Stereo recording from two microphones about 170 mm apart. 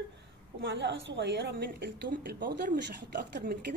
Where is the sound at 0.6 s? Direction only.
90° right.